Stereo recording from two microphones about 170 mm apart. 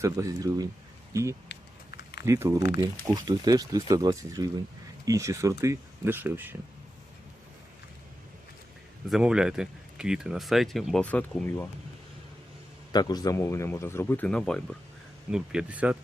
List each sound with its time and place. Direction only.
0.0 s speech: 20° right (ahead or behind)
9.0 s speech: 5° right (ahead or behind); by 11.7 s 10° left (ahead or behind)
12.9 s a man's voice: 25° left (ahead or behind); by 16.0 s 5° right (ahead or behind)